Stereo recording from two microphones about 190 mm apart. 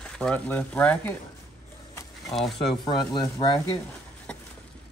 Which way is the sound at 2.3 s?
Centre (ahead or behind).